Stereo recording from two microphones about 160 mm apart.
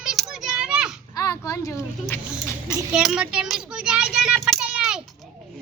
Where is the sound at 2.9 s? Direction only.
Centre (ahead or behind).